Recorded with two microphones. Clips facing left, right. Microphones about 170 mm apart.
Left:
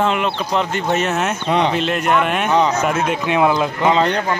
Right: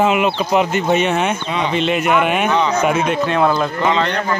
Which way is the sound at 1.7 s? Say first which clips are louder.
Right 1 dB; centre (ahead or behind).